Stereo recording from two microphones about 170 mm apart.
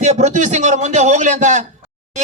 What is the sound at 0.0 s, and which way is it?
A man's voice, 40° right (ahead or behind).